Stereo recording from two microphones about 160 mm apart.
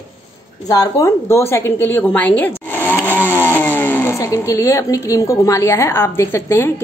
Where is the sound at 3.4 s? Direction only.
10° left (ahead or behind).